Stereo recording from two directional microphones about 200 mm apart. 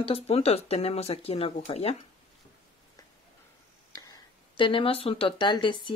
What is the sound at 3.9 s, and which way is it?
Speech, 20° left (ahead or behind).